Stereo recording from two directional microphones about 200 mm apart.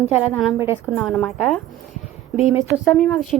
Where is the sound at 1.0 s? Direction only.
Centre (ahead or behind).